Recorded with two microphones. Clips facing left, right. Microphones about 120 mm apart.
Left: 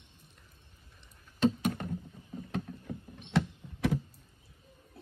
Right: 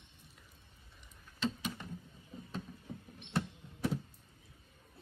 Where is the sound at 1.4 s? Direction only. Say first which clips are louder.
Left 9 dB; 55° left (ahead or behind).